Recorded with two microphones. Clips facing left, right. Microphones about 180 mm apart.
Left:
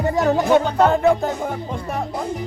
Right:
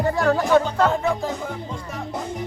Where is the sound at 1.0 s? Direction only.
60° left (ahead or behind).